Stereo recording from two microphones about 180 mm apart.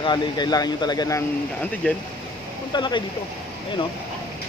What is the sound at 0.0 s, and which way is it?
Speech, 25° left (ahead or behind).